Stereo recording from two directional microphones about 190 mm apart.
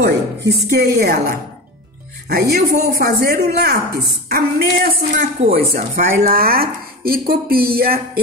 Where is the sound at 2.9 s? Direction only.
50° right (ahead or behind).